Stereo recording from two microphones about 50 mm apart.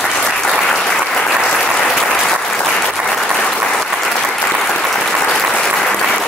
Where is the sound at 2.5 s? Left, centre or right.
Left.